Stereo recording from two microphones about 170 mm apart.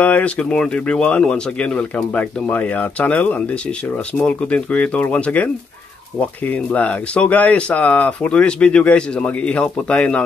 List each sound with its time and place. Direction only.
0.0 s speech: 10° left (ahead or behind)